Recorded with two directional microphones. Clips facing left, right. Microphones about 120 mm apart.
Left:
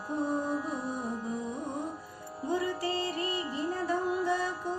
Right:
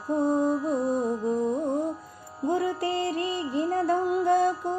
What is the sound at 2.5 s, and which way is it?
Music, 55° right (ahead or behind).